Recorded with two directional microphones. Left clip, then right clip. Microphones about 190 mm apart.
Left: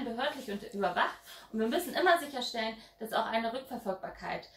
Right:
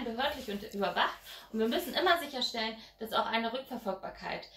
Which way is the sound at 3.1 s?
15° left (ahead or behind).